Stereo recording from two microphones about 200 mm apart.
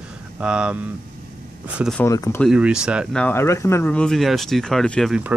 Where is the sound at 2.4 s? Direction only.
5° right (ahead or behind).